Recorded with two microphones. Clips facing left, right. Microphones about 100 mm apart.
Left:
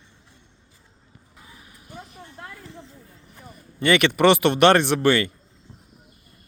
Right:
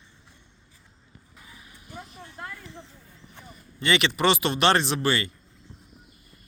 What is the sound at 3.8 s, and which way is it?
Speech, 55° left (ahead or behind).